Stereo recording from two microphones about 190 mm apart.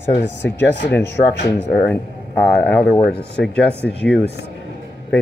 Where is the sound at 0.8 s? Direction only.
65° left (ahead or behind).